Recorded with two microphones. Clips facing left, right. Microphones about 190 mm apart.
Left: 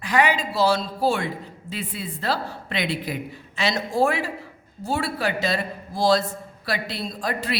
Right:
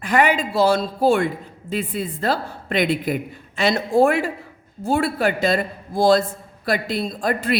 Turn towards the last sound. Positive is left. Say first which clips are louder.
# right 5 dB
turn(degrees=-50)  # may be behind; listen again after turning